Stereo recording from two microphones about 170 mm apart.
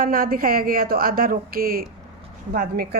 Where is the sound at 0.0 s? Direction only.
60° right (ahead or behind).